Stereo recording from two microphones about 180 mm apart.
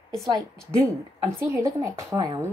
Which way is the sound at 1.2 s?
15° right (ahead or behind).